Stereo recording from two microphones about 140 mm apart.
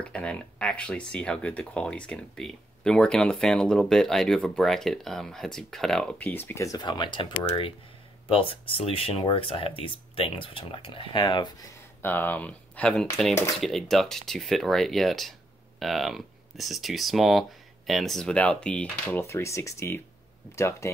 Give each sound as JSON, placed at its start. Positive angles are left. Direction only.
{"t": 0.0, "sound": "speech", "side_deg": 10}
{"t": 12.0, "sound": "speech", "side_deg": 15}